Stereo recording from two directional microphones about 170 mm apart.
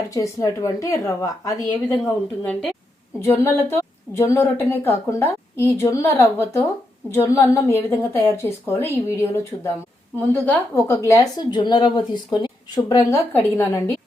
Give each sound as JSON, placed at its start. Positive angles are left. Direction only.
{"t": 0.1, "sound": "speech", "side_deg": 20}
{"t": 2.4, "sound": "a woman's voice", "side_deg": 10}
{"t": 11.1, "sound": "speech", "side_deg": 20}